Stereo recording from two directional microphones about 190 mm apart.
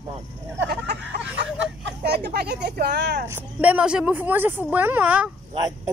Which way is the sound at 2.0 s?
55° right (ahead or behind).